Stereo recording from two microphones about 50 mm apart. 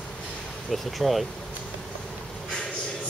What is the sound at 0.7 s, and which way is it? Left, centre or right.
Speech, centre.